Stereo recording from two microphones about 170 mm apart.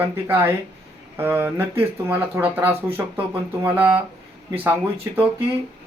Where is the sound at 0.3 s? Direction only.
10° right (ahead or behind).